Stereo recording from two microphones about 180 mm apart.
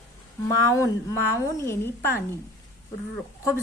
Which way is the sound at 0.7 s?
20° left (ahead or behind).